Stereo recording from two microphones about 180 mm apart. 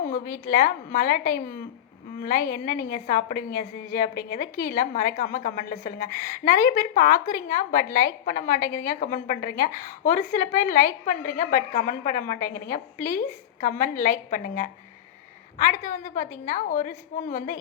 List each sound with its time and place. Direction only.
0.0 s a woman's voice: 50° left (ahead or behind)